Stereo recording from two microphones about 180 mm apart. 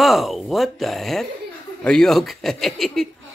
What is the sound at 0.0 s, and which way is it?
Speech, centre (ahead or behind).